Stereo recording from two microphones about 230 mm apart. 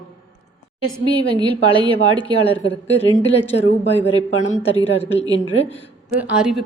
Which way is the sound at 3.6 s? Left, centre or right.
Left.